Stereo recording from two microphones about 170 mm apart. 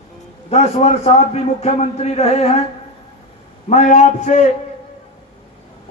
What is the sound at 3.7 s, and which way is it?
Speech, 45° left (ahead or behind).